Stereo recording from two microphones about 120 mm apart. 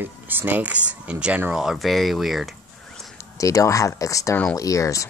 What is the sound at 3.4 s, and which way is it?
Speech, 30° left (ahead or behind).